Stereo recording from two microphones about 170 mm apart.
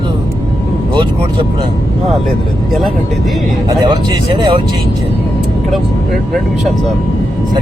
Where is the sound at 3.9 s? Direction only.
30° right (ahead or behind).